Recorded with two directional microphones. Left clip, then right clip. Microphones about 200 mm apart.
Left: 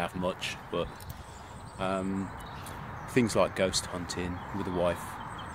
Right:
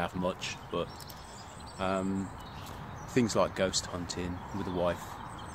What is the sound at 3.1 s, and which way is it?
Speech, 10° left (ahead or behind).